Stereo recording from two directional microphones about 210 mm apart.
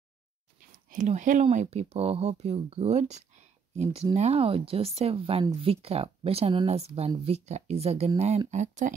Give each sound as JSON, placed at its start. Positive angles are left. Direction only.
{"t": 0.7, "sound": "speech", "side_deg": -40}